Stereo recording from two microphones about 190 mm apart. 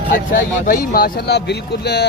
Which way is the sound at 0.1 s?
45° left (ahead or behind).